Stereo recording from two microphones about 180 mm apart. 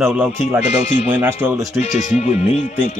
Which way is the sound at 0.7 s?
40° left (ahead or behind).